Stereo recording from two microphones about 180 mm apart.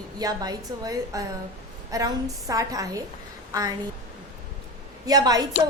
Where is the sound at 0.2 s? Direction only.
20° right (ahead or behind).